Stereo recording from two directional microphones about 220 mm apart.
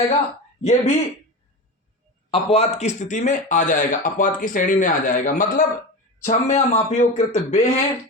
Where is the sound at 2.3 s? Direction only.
25° left (ahead or behind).